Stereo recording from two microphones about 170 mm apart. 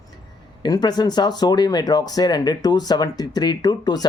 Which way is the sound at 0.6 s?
25° left (ahead or behind).